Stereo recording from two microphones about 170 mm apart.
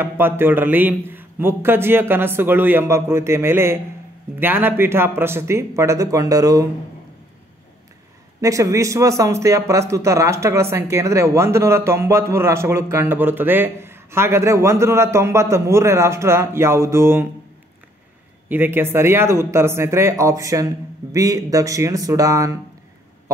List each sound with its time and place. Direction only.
0.0 s speech: 10° right (ahead or behind)
8.4 s speech: 20° right (ahead or behind)
18.5 s speech: 10° right (ahead or behind)